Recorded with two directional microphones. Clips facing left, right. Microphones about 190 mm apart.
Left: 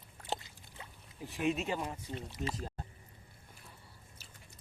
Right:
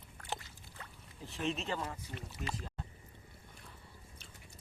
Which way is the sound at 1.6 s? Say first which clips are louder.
Left 2 dB; 15° left (ahead or behind).